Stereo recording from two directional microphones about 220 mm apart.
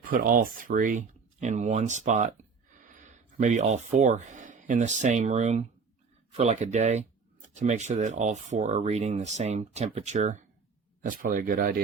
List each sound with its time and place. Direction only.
0.1 s speech: 40° right (ahead or behind)